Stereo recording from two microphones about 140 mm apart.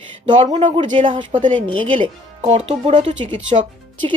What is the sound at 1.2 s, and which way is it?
Speech, 65° right (ahead or behind).